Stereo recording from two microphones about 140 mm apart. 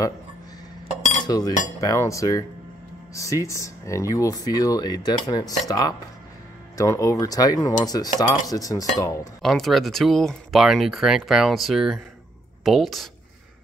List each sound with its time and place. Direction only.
1.2 s speech: 30° left (ahead or behind)
9.4 s speech: centre (ahead or behind)